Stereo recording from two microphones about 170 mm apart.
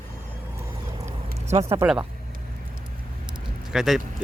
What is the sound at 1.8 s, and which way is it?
Speech, 10° right (ahead or behind).